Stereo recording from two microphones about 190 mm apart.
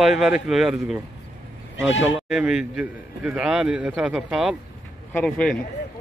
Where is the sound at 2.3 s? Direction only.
5° right (ahead or behind).